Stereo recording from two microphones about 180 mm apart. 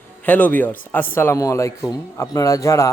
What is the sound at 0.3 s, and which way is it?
Speech, 10° left (ahead or behind).